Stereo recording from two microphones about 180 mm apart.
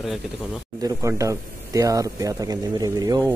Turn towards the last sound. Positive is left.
turn(degrees=-20)  # may be behind; listen again after turning